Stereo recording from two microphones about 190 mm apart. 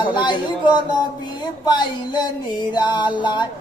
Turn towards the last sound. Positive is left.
turn(degrees=25)  # may be behind; listen again after turning